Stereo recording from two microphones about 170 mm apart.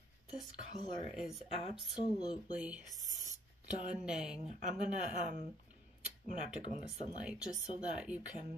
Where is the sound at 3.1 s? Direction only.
45° right (ahead or behind).